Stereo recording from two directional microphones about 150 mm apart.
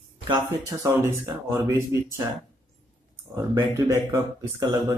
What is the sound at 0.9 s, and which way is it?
Speech, 15° right (ahead or behind).